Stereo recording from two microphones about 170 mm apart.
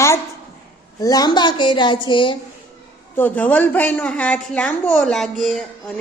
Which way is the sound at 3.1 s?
10° left (ahead or behind).